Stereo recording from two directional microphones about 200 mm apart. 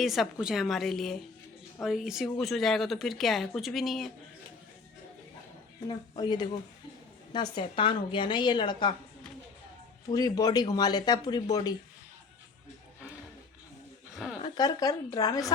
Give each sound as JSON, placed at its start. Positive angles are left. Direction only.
{"t": 0.0, "sound": "speech", "side_deg": 0}
{"t": 6.1, "sound": "a woman's voice", "side_deg": 20}
{"t": 10.1, "sound": "a woman's voice", "side_deg": 20}
{"t": 14.1, "sound": "a sound", "side_deg": 0}
{"t": 14.4, "sound": "a woman's voice", "side_deg": 20}